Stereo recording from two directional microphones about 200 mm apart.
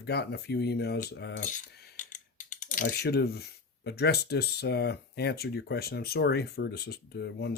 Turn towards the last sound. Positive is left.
turn(degrees=55)  # may be behind; listen again after turning